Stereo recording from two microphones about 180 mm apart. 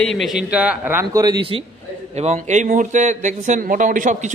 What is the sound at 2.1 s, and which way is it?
Speech, 40° right (ahead or behind).